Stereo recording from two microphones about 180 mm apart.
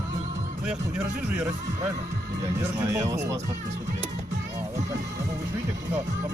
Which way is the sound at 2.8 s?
15° right (ahead or behind).